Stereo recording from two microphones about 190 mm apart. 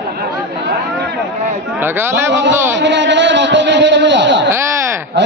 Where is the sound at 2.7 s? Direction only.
70° right (ahead or behind).